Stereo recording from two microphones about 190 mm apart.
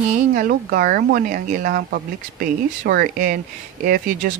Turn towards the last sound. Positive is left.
turn(degrees=-45)  # may be behind; listen again after turning